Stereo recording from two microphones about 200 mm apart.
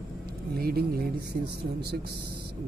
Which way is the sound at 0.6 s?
50° right (ahead or behind).